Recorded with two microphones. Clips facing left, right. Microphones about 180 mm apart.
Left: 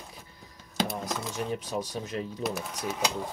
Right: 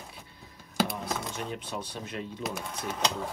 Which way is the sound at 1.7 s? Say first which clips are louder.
Left 4 dB; 40° left (ahead or behind).